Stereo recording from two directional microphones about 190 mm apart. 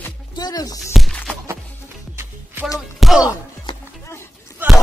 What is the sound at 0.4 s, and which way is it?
Speech, 20° left (ahead or behind).